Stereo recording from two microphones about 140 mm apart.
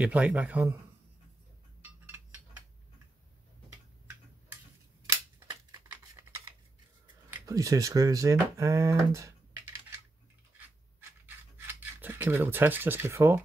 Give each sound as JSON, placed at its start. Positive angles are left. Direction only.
{"t": 0.0, "sound": "a man's voice", "side_deg": -10}
{"t": 5.5, "sound": "typing", "side_deg": -25}
{"t": 7.2, "sound": "speech", "side_deg": -25}
{"t": 11.0, "sound": "a sound", "side_deg": -15}